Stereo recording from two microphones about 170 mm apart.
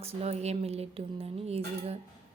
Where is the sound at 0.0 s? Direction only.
35° right (ahead or behind).